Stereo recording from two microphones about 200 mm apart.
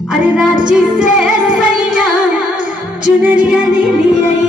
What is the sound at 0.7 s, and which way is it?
Music, 5° right (ahead or behind).